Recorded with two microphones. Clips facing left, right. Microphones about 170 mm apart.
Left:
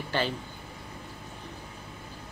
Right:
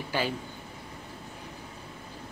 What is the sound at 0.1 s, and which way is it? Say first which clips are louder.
Speech: left 1 dB; 10° right (ahead or behind).